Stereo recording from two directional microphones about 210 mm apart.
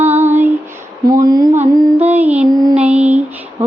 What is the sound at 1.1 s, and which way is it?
Speech, 20° right (ahead or behind).